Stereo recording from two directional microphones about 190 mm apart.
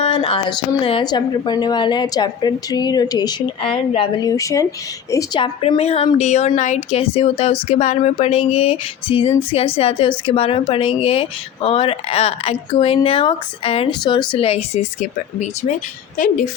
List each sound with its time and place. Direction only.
0.0 s speech: 30° left (ahead or behind)
5.1 s a sound: 25° left (ahead or behind)
16.1 s speech: 45° left (ahead or behind)